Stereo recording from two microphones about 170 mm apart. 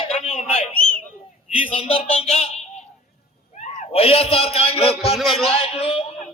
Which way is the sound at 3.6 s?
40° left (ahead or behind).